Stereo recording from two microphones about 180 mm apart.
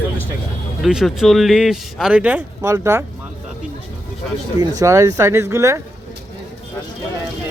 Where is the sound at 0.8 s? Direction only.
Centre (ahead or behind).